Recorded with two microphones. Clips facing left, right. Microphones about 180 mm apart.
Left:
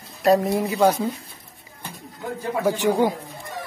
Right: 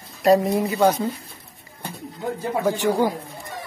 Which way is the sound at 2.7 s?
15° left (ahead or behind).